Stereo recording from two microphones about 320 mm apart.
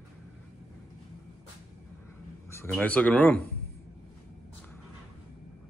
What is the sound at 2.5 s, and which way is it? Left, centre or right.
Speech, centre.